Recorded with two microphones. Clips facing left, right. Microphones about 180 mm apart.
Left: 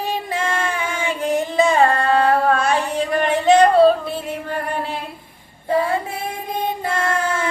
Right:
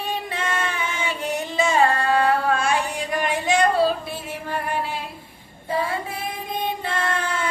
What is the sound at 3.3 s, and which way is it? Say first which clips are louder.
Yodeling: left 7 dB; 65° left (ahead or behind).